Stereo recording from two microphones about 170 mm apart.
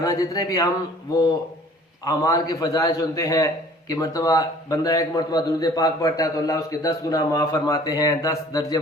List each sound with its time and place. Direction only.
0.0 s a man's voice: 20° left (ahead or behind)
2.0 s a man's voice: 20° left (ahead or behind)